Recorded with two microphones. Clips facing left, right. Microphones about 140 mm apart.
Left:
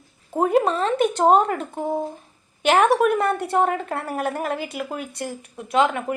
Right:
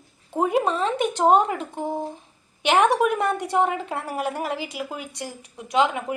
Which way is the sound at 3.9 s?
10° right (ahead or behind).